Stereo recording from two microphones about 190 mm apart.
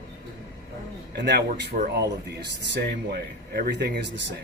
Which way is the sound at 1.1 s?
60° right (ahead or behind).